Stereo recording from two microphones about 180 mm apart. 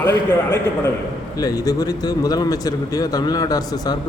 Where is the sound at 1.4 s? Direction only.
20° left (ahead or behind).